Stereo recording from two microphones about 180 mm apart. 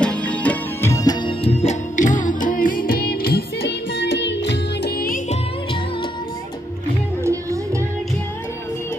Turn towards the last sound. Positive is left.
turn(degrees=-15)  # may be behind; listen again after turning